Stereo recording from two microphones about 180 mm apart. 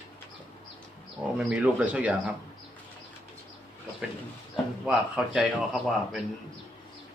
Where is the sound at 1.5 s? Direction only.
5° right (ahead or behind).